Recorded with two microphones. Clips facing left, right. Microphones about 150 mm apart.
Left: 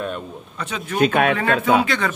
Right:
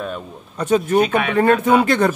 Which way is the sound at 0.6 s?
45° right (ahead or behind).